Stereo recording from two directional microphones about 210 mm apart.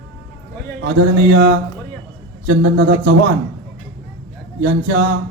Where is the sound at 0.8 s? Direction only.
55° right (ahead or behind).